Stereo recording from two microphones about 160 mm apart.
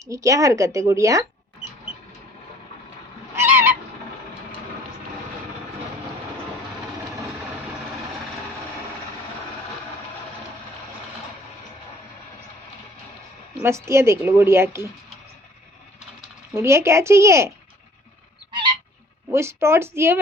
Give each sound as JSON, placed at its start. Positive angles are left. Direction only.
{"t": 0.1, "sound": "a woman's voice", "side_deg": -20}
{"t": 3.3, "sound": "goose", "side_deg": -15}
{"t": 13.6, "sound": "speech", "side_deg": -15}
{"t": 16.6, "sound": "speech", "side_deg": -15}
{"t": 18.5, "sound": "goose", "side_deg": -30}
{"t": 19.3, "sound": "speech", "side_deg": -15}